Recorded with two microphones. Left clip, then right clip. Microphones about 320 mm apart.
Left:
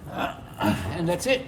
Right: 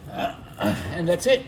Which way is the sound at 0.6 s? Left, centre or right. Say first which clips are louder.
Right 1 dB; left.